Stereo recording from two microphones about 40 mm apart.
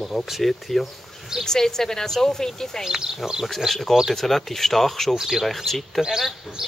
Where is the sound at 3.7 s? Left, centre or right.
Centre.